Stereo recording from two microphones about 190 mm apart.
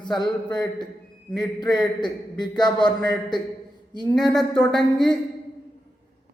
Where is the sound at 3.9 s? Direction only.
20° left (ahead or behind).